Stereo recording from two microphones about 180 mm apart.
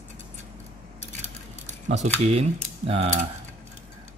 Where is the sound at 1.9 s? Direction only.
35° right (ahead or behind).